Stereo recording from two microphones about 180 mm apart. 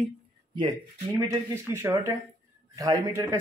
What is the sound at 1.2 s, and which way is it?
Speech, 15° right (ahead or behind).